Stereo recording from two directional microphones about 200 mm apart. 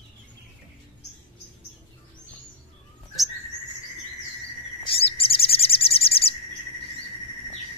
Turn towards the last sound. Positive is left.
turn(degrees=30)  # may be behind; listen again after turning